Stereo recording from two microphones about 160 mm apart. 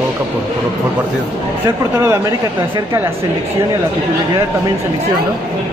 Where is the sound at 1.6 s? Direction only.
15° right (ahead or behind).